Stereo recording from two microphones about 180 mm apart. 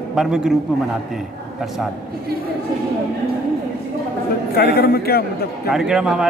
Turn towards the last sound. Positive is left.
turn(degrees=-5)  # may be behind; listen again after turning